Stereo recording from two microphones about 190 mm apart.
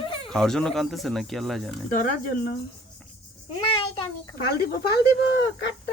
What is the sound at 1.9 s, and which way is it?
Speech, 45° left (ahead or behind).